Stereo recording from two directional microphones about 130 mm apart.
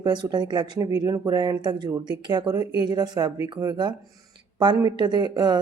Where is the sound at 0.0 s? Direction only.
35° right (ahead or behind).